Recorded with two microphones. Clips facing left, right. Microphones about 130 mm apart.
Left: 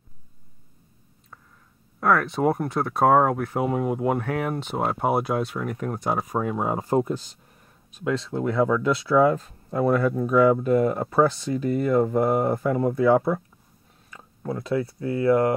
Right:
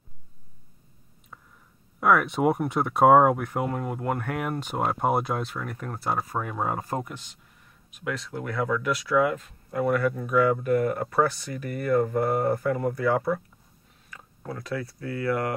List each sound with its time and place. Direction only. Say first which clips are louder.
2.0 s speech: even; 5° right (ahead or behind)
3.5 s speech: left 5 dB; 10° left (ahead or behind)
4.3 s speech: left 3 dB; centre (ahead or behind); by 15.5 s 25° left (ahead or behind)